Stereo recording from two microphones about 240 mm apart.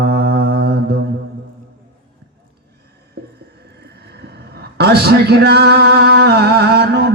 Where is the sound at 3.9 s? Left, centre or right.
Right.